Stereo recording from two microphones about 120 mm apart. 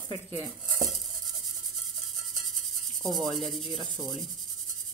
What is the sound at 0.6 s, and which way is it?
Stir, centre (ahead or behind).